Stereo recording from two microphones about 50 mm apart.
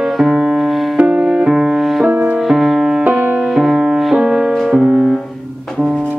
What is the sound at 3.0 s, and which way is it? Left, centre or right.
Music, right.